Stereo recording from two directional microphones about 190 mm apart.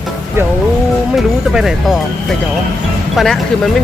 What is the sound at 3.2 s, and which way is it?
Speech, centre (ahead or behind).